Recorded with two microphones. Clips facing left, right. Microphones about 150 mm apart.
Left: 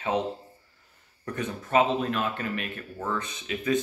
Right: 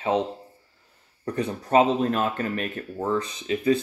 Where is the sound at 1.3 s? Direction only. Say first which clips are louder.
Right 4 dB; 35° right (ahead or behind).